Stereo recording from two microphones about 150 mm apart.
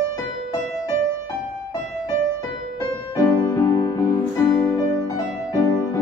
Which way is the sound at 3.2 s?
25° left (ahead or behind).